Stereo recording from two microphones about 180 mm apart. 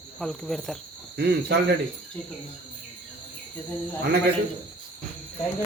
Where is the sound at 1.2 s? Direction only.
65° right (ahead or behind).